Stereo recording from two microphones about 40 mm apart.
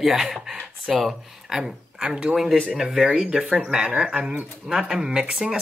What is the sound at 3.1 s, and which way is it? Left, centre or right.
Speech, right.